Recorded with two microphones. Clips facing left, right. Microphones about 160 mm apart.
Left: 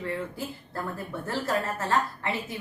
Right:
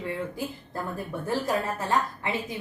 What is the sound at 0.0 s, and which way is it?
A woman's voice, 15° right (ahead or behind).